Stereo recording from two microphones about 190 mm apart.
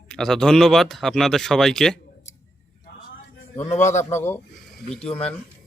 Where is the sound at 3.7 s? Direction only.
40° left (ahead or behind).